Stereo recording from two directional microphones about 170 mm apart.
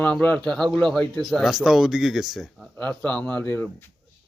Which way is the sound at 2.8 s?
10° left (ahead or behind).